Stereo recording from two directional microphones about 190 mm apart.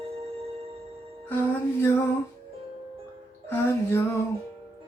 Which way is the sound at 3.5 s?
15° left (ahead or behind).